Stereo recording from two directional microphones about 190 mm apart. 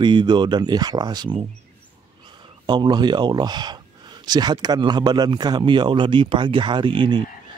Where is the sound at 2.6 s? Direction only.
25° right (ahead or behind).